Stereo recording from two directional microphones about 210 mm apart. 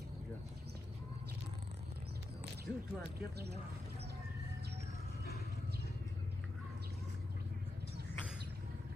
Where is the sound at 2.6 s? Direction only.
50° right (ahead or behind).